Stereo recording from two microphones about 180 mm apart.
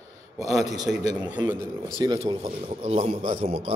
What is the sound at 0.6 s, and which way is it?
Speech, 20° right (ahead or behind).